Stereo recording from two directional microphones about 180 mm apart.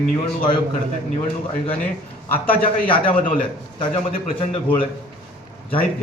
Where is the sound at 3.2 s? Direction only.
50° left (ahead or behind).